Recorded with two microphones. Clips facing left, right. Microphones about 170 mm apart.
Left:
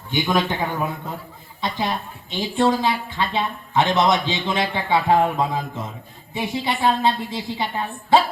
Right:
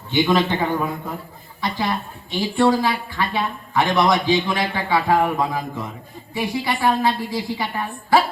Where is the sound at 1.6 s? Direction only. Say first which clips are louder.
Right 1 dB; 20° left (ahead or behind).